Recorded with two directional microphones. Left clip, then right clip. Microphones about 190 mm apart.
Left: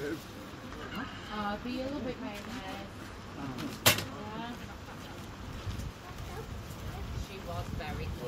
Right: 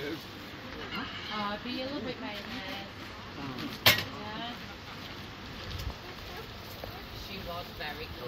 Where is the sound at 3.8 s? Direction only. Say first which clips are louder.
Right 3 dB; 45° left (ahead or behind).